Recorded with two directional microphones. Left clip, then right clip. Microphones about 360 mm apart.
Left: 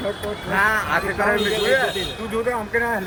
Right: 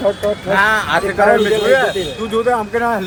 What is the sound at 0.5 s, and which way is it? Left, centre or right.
A man's voice, centre.